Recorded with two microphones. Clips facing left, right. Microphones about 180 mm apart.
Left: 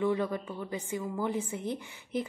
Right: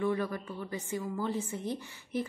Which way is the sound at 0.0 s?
20° left (ahead or behind).